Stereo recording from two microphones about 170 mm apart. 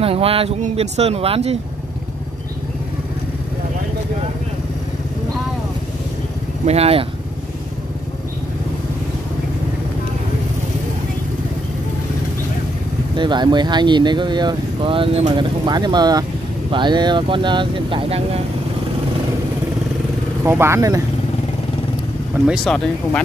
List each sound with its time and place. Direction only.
0.0 s speech: 35° right (ahead or behind)
6.6 s speech: 40° right (ahead or behind)
13.1 s speech: 25° right (ahead or behind)
20.4 s speech: 15° right (ahead or behind)
22.5 s speech: centre (ahead or behind)